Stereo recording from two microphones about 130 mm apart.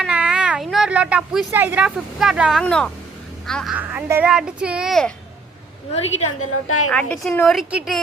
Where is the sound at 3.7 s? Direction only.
10° right (ahead or behind); by 5.1 s 5° left (ahead or behind).